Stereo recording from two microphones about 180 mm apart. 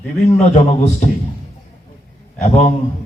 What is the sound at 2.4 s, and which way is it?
Speech, 40° left (ahead or behind).